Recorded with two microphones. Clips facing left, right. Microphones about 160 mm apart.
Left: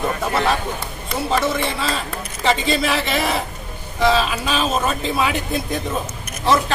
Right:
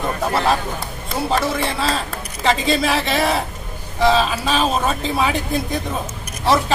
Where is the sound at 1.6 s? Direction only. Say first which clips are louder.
Right 2 dB; centre (ahead or behind).